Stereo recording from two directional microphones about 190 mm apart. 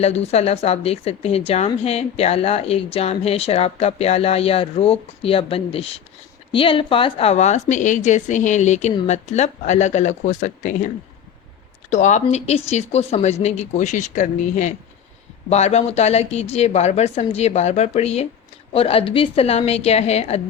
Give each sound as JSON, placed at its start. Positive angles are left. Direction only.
{"t": 0.0, "sound": "a woman's voice", "side_deg": 35}